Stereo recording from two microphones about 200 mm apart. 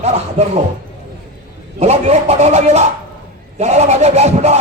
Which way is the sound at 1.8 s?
35° right (ahead or behind).